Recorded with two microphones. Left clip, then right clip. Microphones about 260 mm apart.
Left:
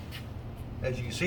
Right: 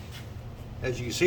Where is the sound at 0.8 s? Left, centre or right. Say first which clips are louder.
Right 5 dB; right.